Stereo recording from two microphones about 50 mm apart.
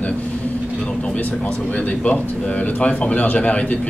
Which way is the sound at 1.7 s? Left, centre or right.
Left.